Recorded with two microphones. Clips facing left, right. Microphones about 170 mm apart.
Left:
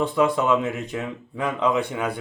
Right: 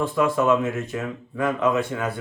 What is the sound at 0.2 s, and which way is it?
Speech, 20° left (ahead or behind).